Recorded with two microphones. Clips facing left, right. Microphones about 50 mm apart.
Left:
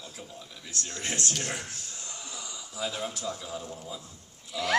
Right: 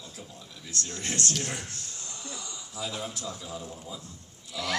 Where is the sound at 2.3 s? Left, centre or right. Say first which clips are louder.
Left 3 dB; centre.